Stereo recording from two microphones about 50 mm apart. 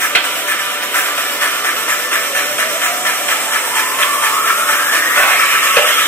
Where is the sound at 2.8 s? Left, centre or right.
Left.